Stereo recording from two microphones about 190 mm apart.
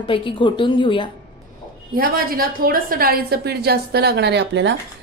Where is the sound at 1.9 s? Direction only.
50° right (ahead or behind); by 4.7 s 70° right (ahead or behind).